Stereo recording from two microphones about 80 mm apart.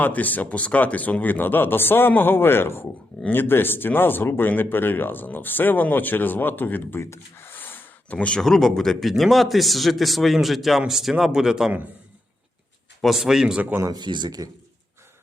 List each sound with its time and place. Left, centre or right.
0.0 s speech: left
7.0 s gasp: left; by 8.4 s centre
8.4 s a man's voice: centre
13.0 s a man's voice: centre
13.6 s speech: centre
13.9 s speech: right